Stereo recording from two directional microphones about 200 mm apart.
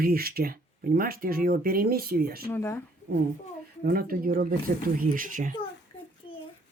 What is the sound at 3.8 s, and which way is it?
Speech, 45° right (ahead or behind).